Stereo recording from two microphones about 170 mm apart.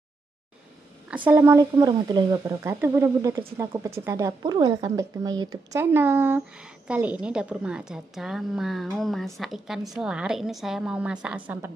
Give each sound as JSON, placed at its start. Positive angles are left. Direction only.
{"t": 1.1, "sound": "speech", "side_deg": -15}